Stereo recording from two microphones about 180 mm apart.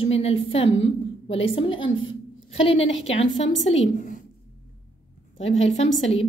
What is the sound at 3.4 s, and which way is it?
Speech, 90° left.